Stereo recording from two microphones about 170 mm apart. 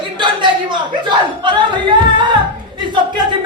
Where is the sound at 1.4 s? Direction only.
25° right (ahead or behind).